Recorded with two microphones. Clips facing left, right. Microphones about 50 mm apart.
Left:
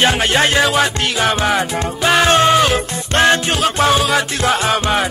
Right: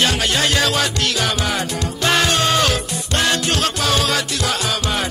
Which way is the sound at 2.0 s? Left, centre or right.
Centre.